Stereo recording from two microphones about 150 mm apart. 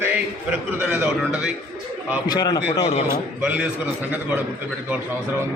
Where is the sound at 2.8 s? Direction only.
45° left (ahead or behind).